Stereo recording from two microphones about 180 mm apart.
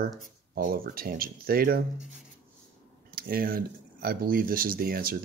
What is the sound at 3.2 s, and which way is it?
Speech, 55° right (ahead or behind).